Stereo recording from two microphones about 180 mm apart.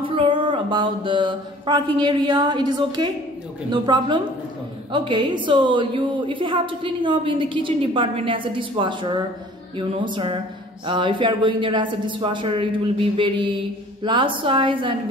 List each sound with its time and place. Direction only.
0.0 s mantra: 30° right (ahead or behind)
3.7 s a woman's voice: 25° right (ahead or behind)